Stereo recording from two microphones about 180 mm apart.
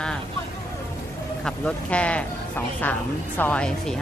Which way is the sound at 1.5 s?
5° left (ahead or behind).